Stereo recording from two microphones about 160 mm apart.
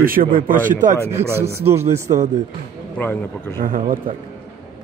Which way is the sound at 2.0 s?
50° right (ahead or behind).